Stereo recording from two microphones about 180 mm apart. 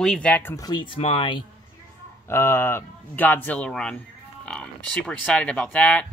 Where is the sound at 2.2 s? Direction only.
15° left (ahead or behind).